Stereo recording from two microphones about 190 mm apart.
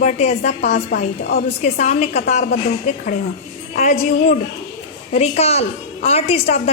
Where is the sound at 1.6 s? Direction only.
35° left (ahead or behind).